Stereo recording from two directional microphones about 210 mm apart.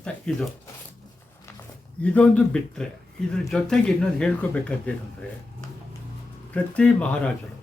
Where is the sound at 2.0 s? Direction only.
5° left (ahead or behind).